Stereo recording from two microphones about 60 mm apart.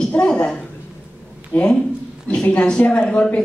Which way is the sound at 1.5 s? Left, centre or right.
Left.